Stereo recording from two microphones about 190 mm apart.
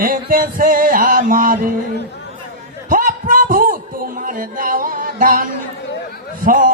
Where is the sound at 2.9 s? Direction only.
45° right (ahead or behind).